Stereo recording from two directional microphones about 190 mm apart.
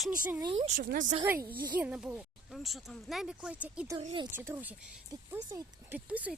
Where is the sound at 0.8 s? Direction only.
45° right (ahead or behind).